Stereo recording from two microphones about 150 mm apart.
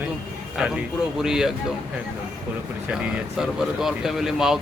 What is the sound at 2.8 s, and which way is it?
Speech, 5° right (ahead or behind).